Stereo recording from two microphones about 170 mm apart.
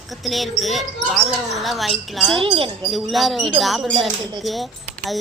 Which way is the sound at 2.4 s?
30° right (ahead or behind).